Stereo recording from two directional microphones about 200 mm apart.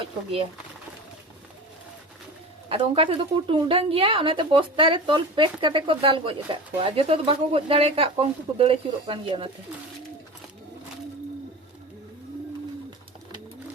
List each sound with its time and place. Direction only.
0.0 s speech: 30° right (ahead or behind)
2.6 s a woman's voice: 25° right (ahead or behind)